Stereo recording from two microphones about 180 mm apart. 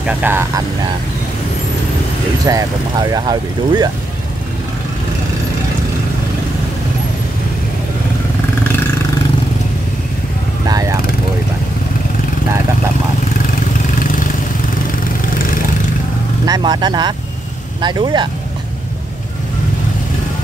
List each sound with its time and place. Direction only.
0.0 s speech: 10° right (ahead or behind)
2.5 s speech: 20° right (ahead or behind)
10.7 s vehicle: 20° right (ahead or behind)
16.4 s speech: 20° right (ahead or behind)